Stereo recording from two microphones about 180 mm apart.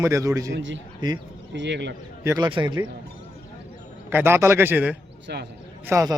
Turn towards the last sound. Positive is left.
turn(degrees=-15)  # may be behind; listen again after turning